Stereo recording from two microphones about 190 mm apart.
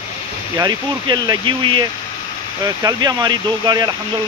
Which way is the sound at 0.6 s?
20° right (ahead or behind).